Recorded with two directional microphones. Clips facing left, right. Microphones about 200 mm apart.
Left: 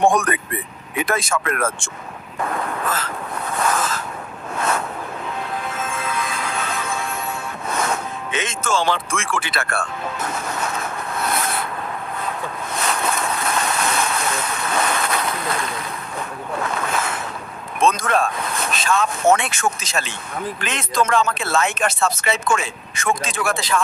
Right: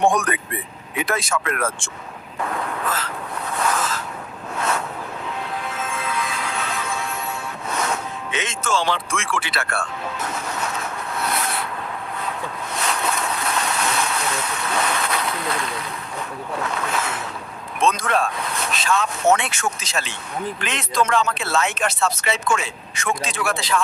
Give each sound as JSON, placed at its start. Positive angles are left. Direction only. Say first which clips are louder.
{"t": 0.0, "sound": "speech", "louder": "left 2 dB", "side_deg": 50}
{"t": 2.4, "sound": "a sound", "louder": "left 2 dB", "side_deg": 45}
{"t": 4.5, "sound": "vehicle", "louder": "left 2 dB", "side_deg": 50}
{"t": 5.6, "sound": "music", "louder": "left 1 dB", "side_deg": 50}
{"t": 12.7, "sound": "vehicle", "louder": "left 2 dB", "side_deg": 50}
{"t": 16.6, "sound": "speech", "louder": "left 2 dB", "side_deg": 50}